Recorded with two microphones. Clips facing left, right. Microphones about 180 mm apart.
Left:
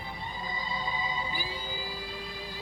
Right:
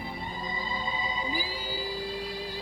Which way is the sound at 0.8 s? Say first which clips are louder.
Even; 20° right (ahead or behind).